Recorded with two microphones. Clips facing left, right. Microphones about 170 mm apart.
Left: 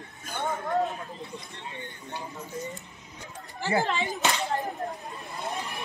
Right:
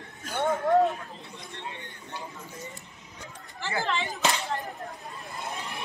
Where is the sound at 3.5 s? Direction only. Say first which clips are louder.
Left 6 dB; 40° left (ahead or behind).